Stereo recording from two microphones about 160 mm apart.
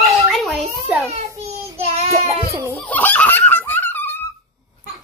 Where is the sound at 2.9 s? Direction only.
10° left (ahead or behind).